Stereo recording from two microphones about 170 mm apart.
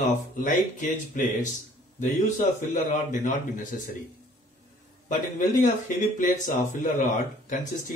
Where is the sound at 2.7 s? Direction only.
45° left (ahead or behind).